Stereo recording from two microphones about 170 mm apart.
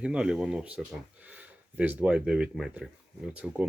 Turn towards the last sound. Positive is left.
turn(degrees=-5)  # may be behind; listen again after turning